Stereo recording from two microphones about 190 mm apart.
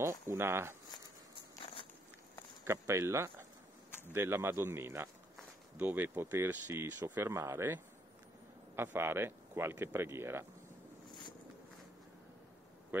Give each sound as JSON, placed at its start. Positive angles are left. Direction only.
{"t": 0.0, "sound": "speech", "side_deg": -15}
{"t": 1.6, "sound": "walk", "side_deg": 30}
{"t": 2.6, "sound": "speech", "side_deg": -15}